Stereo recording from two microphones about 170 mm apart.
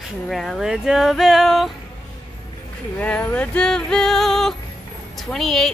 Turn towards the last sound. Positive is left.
turn(degrees=0)  # may be behind; listen again after turning